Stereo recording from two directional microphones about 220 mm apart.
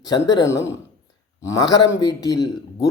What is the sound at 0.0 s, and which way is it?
A man's voice, 15° left (ahead or behind).